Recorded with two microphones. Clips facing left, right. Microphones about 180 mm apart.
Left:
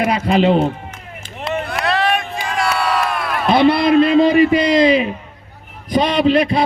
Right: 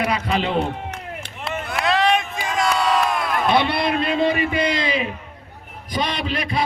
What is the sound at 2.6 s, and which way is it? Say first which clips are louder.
Crowd: left 1 dB; 20° right (ahead or behind).